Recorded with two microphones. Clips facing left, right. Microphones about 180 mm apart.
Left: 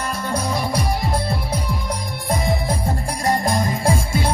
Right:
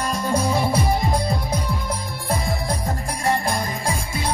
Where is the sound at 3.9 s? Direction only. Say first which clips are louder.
Left 6 dB; 30° left (ahead or behind).